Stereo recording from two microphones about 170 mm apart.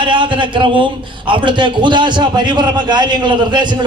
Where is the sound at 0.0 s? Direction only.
30° right (ahead or behind).